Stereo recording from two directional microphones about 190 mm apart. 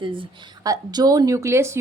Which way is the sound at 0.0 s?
25° right (ahead or behind).